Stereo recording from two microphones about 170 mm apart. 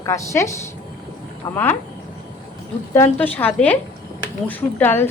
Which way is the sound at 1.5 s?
10° left (ahead or behind).